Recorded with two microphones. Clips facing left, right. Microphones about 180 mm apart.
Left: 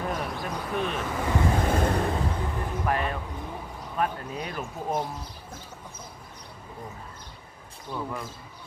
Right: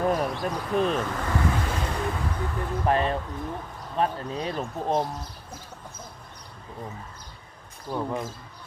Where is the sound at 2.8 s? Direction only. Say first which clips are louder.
Right 5 dB; 30° right (ahead or behind).